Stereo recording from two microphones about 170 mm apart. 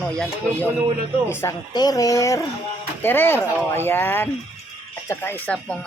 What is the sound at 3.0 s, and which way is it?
Speech, 10° left (ahead or behind).